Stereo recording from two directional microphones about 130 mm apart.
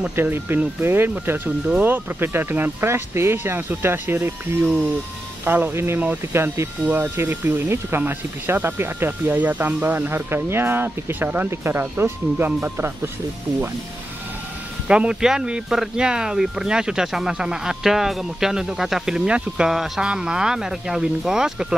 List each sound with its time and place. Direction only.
0.1 s speech: 15° right (ahead or behind)
14.9 s speech: 5° right (ahead or behind)